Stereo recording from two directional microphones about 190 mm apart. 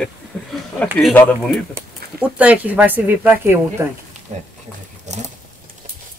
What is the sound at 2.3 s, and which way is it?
Speech, 5° right (ahead or behind).